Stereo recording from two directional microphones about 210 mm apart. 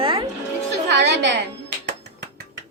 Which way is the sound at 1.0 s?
55° right (ahead or behind).